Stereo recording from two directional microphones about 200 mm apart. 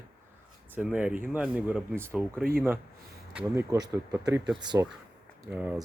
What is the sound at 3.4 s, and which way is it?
Speech, 15° right (ahead or behind).